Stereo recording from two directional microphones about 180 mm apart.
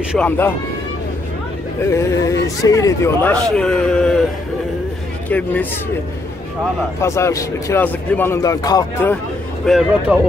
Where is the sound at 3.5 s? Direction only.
5° left (ahead or behind).